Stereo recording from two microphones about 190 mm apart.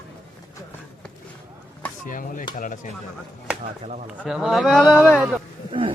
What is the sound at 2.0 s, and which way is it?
Stir, 45° left (ahead or behind).